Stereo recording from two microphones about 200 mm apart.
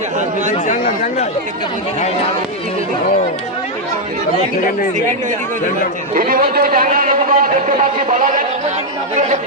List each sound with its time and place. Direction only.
0.5 s speech: 35° left (ahead or behind)
6.1 s a man's voice: 45° right (ahead or behind)